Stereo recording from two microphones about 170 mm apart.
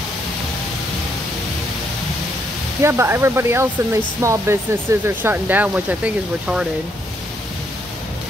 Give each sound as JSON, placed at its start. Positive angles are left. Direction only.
{"t": 2.8, "sound": "speech", "side_deg": -15}